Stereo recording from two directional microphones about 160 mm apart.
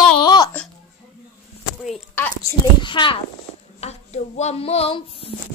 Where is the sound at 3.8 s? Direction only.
40° left (ahead or behind).